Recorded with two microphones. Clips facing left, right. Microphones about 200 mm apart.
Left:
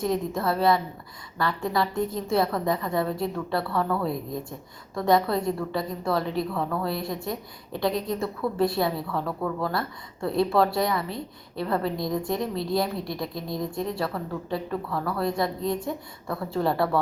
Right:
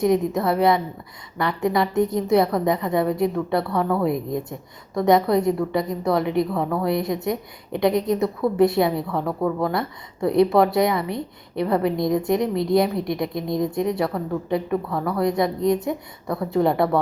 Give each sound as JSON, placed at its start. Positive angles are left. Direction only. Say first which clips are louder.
{"t": 0.0, "sound": "a woman's voice", "louder": "right 6 dB", "side_deg": -20}